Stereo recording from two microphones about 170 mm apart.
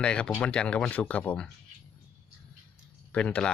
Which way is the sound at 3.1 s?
5° left (ahead or behind).